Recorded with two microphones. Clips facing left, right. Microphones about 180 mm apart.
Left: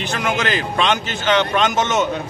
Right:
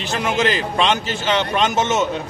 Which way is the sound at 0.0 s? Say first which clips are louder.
Right 2 dB; 30° right (ahead or behind).